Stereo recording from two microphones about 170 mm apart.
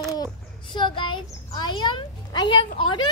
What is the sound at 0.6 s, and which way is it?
Speech, 30° left (ahead or behind).